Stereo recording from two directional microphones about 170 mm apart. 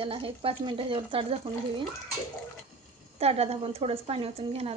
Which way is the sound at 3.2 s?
35° right (ahead or behind).